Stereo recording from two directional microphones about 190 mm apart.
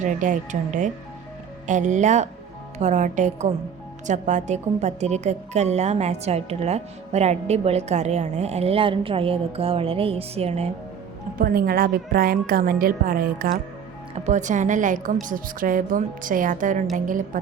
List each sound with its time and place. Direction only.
0.0 s speech: 40° right (ahead or behind)
11.3 s a woman's voice: 50° right (ahead or behind)